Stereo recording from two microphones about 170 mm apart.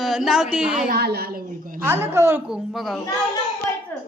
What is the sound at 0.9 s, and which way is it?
Speech, 70° right (ahead or behind).